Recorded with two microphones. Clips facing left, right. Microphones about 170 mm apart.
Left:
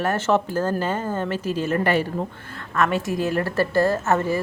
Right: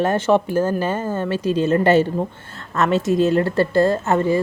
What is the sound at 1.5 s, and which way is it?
A woman's voice, 20° right (ahead or behind).